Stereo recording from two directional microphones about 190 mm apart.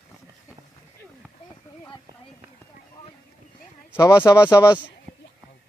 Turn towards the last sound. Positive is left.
turn(degrees=15)  # may be behind; listen again after turning